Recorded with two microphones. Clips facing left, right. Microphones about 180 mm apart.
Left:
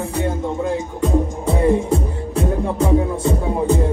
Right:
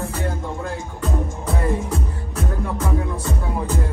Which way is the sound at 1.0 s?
25° left (ahead or behind).